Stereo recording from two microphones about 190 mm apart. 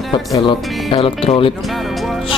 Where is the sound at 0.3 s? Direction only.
25° left (ahead or behind).